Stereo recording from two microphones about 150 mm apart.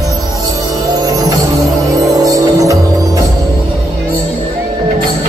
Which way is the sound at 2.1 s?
25° right (ahead or behind).